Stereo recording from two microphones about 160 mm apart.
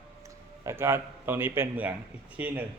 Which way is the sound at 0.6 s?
15° right (ahead or behind).